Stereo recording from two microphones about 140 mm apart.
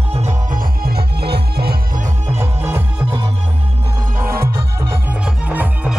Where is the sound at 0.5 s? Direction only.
85° right.